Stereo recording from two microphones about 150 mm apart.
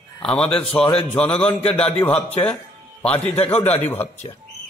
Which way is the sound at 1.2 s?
5° left (ahead or behind).